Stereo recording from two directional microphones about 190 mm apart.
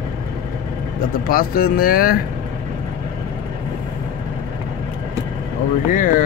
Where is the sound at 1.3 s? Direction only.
50° left (ahead or behind).